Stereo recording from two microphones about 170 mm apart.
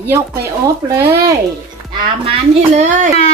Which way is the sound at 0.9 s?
20° right (ahead or behind).